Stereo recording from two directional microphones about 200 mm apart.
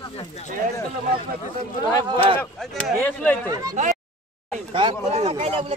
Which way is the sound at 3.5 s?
15° right (ahead or behind).